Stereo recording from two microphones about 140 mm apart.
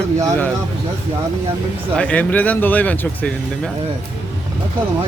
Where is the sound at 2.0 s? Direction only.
10° left (ahead or behind).